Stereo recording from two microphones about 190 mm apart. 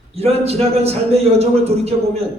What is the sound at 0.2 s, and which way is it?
A man's voice, 35° right (ahead or behind).